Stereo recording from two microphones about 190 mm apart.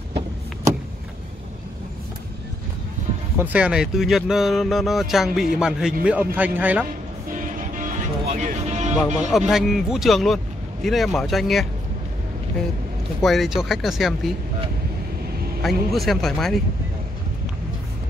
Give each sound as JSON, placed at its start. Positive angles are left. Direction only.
{"t": 3.3, "sound": "speech", "side_deg": -5}
{"t": 7.2, "sound": "music", "side_deg": -45}
{"t": 9.5, "sound": "speech", "side_deg": 0}
{"t": 13.2, "sound": "speech", "side_deg": 0}
{"t": 15.6, "sound": "speech", "side_deg": 0}